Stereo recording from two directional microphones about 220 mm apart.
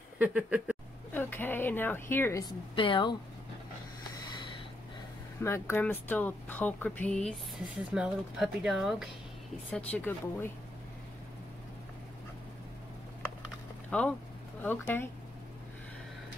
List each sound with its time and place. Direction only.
0.2 s speech: 5° right (ahead or behind)
1.1 s speech: 10° left (ahead or behind)
2.7 s a woman's voice: 25° left (ahead or behind)
5.4 s speech: 10° left (ahead or behind)
13.8 s speech: 5° left (ahead or behind)